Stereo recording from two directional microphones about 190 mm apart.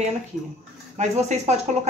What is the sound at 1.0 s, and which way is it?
Speech, 35° right (ahead or behind).